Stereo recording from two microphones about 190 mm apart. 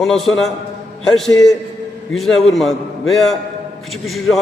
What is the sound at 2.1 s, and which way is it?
A man's voice, centre (ahead or behind).